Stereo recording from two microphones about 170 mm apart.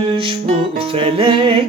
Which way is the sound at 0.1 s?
30° right (ahead or behind).